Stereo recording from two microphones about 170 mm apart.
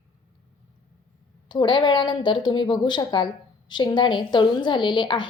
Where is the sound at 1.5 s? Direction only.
25° left (ahead or behind).